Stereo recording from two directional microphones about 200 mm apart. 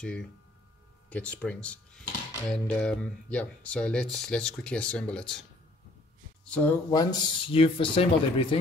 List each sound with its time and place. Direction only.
0.0 s cutlery: 5° left (ahead or behind)
6.4 s speech: 5° left (ahead or behind)
6.9 s a man's voice: 20° left (ahead or behind)